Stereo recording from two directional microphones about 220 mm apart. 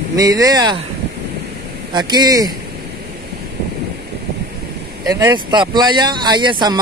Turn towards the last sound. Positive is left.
turn(degrees=-20)  # may be behind; listen again after turning